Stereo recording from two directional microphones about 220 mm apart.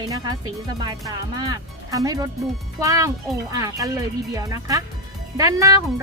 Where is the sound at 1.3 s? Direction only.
15° right (ahead or behind).